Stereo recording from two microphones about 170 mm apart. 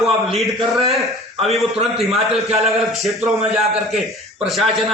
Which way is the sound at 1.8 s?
35° right (ahead or behind).